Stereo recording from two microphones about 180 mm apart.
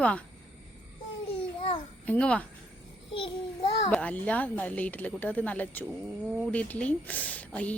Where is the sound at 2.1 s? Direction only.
5° left (ahead or behind).